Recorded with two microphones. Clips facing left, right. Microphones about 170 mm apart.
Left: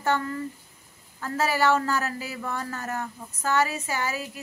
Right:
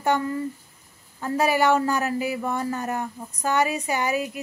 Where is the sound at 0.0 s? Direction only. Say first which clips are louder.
Right 3 dB; 15° right (ahead or behind).